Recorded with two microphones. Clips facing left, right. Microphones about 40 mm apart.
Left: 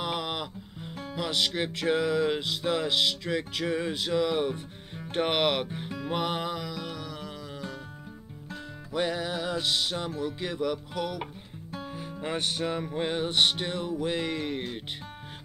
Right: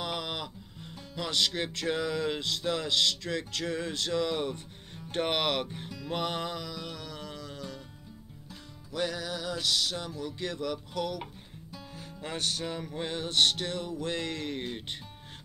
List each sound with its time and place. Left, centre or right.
0.0 s music: centre
8.9 s music: left
10.4 s music: centre